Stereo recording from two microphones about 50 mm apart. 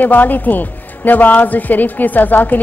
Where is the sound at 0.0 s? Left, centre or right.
Left.